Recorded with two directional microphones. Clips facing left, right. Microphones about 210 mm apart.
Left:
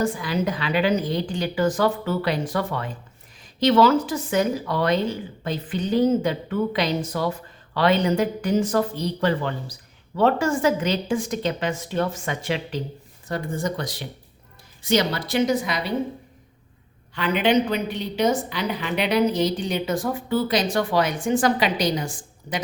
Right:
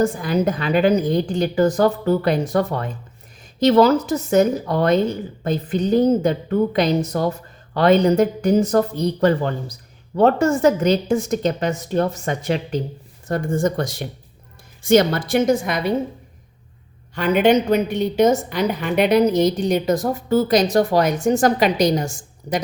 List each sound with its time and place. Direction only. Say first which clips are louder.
0.0 s a woman's voice: right 5 dB; 45° right (ahead or behind)
17.2 s a woman's voice: right 5 dB; 45° right (ahead or behind)